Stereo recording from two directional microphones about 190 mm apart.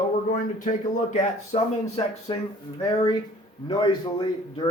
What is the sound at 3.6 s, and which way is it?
A man's voice, 25° left (ahead or behind).